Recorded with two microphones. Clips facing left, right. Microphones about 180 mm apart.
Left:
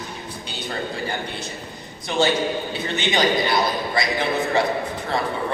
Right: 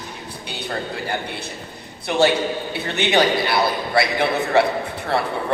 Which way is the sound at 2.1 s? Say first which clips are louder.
Right 2 dB; 60° right (ahead or behind).